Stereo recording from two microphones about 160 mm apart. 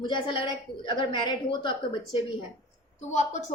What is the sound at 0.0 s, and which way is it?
A woman's voice, 30° left (ahead or behind).